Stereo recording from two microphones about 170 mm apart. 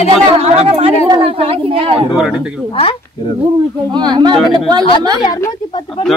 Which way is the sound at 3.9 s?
25° right (ahead or behind).